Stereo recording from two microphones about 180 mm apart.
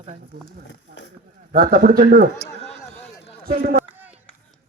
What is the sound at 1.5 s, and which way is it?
Speech, 55° right (ahead or behind).